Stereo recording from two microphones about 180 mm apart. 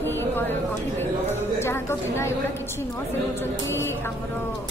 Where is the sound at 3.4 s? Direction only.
15° left (ahead or behind).